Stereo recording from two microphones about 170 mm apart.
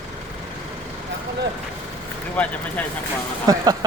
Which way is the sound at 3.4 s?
20° right (ahead or behind).